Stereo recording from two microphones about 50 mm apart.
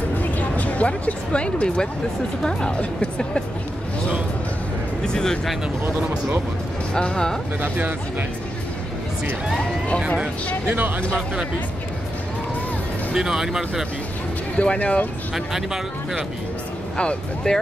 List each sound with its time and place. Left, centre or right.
0.1 s a sound: left
2.4 s a woman's voice: left
5.0 s speech: centre
6.9 s a woman's voice: centre
7.6 s speech: right
10.1 s speech: right
13.1 s speech: centre
14.6 s a woman's voice: left
15.3 s speech: centre
16.9 s speech: centre